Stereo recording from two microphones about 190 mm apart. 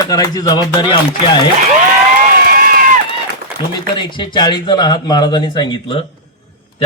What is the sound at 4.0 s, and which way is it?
A man's voice, 25° left (ahead or behind).